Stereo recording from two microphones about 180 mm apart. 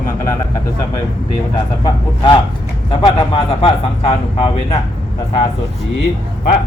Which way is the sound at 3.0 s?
30° left (ahead or behind).